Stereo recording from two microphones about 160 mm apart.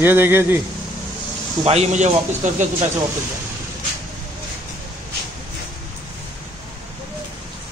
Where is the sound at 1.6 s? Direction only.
45° right (ahead or behind).